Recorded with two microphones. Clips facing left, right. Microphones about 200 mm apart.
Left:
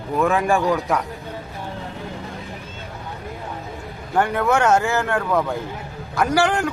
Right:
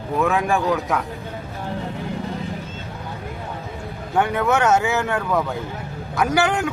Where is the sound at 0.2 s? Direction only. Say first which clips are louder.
Left 2 dB; centre (ahead or behind).